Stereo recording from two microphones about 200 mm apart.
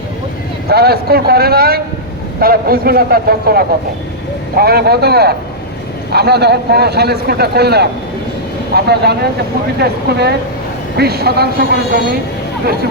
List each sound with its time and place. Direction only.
0.7 s a man's voice: 50° right (ahead or behind)